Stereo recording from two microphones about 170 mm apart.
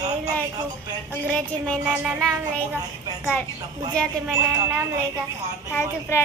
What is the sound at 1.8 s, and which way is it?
Music, centre (ahead or behind).